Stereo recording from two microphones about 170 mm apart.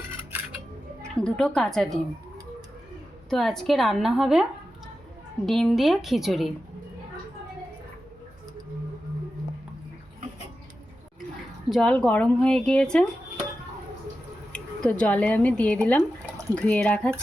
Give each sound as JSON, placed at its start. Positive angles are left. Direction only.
{"t": 1.1, "sound": "speech", "side_deg": 5}
{"t": 3.2, "sound": "speech", "side_deg": 0}
{"t": 5.5, "sound": "speech", "side_deg": 0}
{"t": 11.7, "sound": "speech", "side_deg": 5}
{"t": 14.5, "sound": "speech", "side_deg": 5}